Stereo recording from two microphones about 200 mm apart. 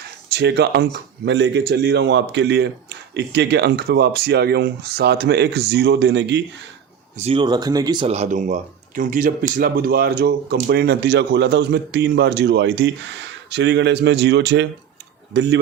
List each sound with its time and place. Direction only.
0.3 s speech: 55° right (ahead or behind)
7.2 s speech: 30° right (ahead or behind)
8.0 s speech: 35° right (ahead or behind); by 15.5 s 60° right (ahead or behind)